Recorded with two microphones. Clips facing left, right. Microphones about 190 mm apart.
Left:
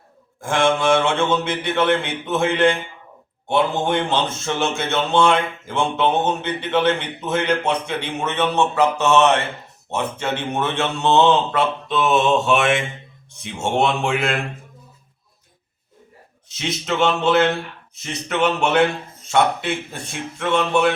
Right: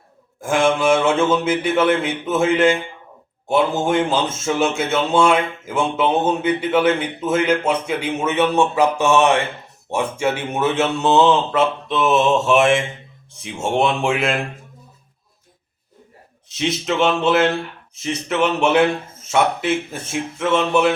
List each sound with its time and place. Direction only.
0.4 s speech: 5° right (ahead or behind)
3.5 s speech: 5° right (ahead or behind)
9.9 s mantra: 10° right (ahead or behind)
16.6 s mantra: centre (ahead or behind)